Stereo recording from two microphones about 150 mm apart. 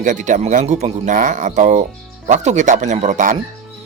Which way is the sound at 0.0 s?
55° right (ahead or behind).